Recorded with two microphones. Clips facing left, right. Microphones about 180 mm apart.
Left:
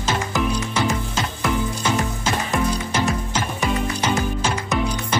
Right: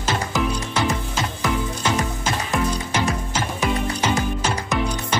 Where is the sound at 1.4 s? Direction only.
Centre (ahead or behind).